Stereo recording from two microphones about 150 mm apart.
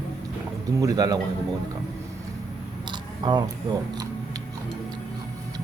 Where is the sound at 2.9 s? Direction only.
30° right (ahead or behind).